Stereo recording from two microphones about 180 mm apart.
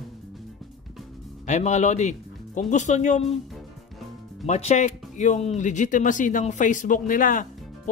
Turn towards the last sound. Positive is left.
turn(degrees=50)  # may be behind; listen again after turning